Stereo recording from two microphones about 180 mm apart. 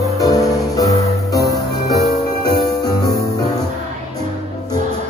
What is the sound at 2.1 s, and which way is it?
Music, 60° left (ahead or behind).